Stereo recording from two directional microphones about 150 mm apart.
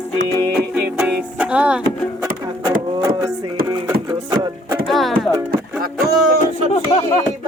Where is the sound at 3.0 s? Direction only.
25° right (ahead or behind).